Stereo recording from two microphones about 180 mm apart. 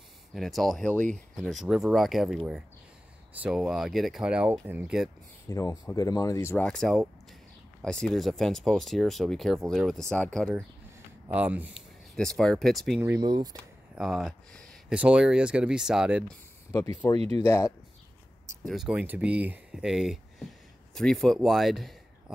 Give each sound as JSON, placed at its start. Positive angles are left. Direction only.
{"t": 0.3, "sound": "speech", "side_deg": 0}
{"t": 5.5, "sound": "speech", "side_deg": 15}
{"t": 11.3, "sound": "speech", "side_deg": -10}
{"t": 12.2, "sound": "speech", "side_deg": 5}
{"t": 13.2, "sound": "speech", "side_deg": -25}
{"t": 13.9, "sound": "speech", "side_deg": 0}
{"t": 17.2, "sound": "speech", "side_deg": -35}
{"t": 17.5, "sound": "speech", "side_deg": 15}
{"t": 18.6, "sound": "speech", "side_deg": 0}